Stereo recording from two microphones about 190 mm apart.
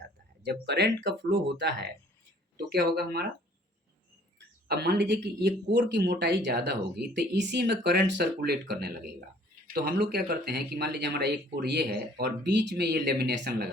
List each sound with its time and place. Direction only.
0.4 s speech: 65° right (ahead or behind)
4.7 s speech: 60° right (ahead or behind)
9.7 s speech: 60° right (ahead or behind)